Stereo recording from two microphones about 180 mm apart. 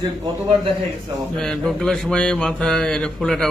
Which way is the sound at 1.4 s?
5° left (ahead or behind).